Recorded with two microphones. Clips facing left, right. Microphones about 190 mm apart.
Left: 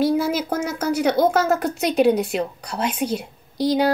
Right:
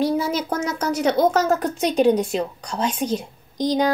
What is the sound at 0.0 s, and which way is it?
A woman's voice, 10° left (ahead or behind).